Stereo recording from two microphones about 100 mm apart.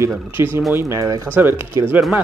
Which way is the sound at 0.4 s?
25° right (ahead or behind).